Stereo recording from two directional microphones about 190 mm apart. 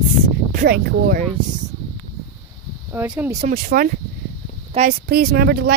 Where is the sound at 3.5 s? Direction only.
50° right (ahead or behind).